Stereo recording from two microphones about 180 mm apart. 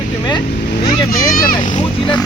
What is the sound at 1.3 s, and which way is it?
Speech, 50° left (ahead or behind).